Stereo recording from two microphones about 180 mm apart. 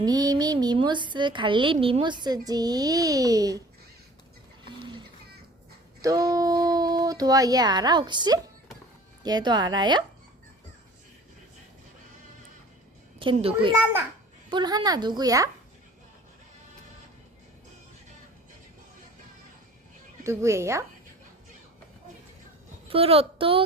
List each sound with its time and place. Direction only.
0.0 s speech: 20° right (ahead or behind)
6.0 s speech: 20° right (ahead or behind)
13.1 s a child's voice: 30° right (ahead or behind)
20.2 s speech: 15° right (ahead or behind)
22.9 s a woman's voice: 30° right (ahead or behind)